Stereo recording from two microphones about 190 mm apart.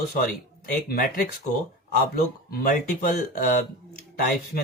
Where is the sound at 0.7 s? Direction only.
50° left (ahead or behind).